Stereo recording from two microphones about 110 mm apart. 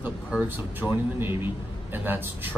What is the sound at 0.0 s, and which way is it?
A man's voice, 10° right (ahead or behind).